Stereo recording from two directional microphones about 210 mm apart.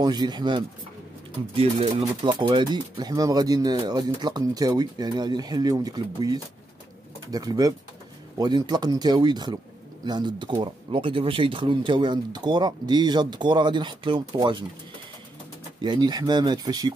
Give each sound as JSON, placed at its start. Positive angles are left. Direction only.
{"t": 0.0, "sound": "speech", "side_deg": -20}
{"t": 15.8, "sound": "speech", "side_deg": -20}